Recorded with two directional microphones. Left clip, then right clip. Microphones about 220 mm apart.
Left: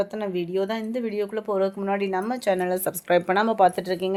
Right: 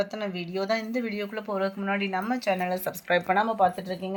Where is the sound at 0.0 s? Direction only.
45° left (ahead or behind).